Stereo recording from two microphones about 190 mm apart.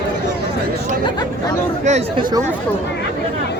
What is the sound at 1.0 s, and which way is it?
Chatter, 20° left (ahead or behind).